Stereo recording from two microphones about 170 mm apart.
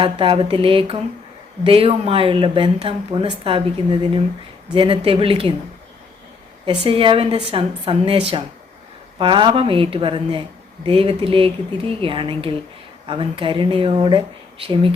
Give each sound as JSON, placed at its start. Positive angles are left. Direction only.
{"t": 0.0, "sound": "speech", "side_deg": -30}
{"t": 6.8, "sound": "speech", "side_deg": -30}